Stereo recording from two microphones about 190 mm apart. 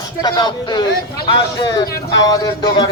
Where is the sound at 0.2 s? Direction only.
20° left (ahead or behind).